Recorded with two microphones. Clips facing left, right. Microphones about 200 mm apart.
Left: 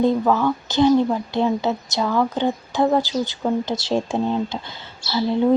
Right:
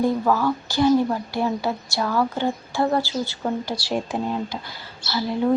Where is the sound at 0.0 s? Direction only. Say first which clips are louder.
Left 2 dB; 20° left (ahead or behind).